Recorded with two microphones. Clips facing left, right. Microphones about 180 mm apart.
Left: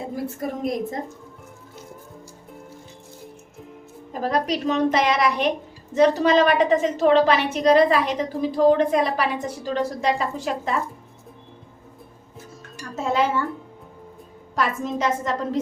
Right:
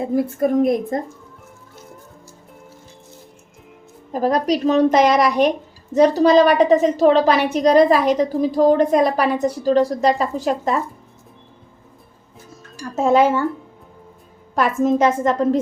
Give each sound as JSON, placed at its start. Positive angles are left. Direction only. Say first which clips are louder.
{"t": 0.3, "sound": "a woman's voice", "louder": "right 9 dB", "side_deg": -55}
{"t": 4.1, "sound": "a woman's voice", "louder": "right 5 dB", "side_deg": -40}
{"t": 13.0, "sound": "a woman's voice", "louder": "right 7 dB", "side_deg": -50}
{"t": 14.5, "sound": "a woman's voice", "louder": "right 8 dB", "side_deg": -50}